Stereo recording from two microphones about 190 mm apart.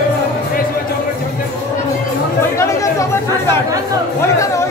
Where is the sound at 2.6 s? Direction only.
15° left (ahead or behind).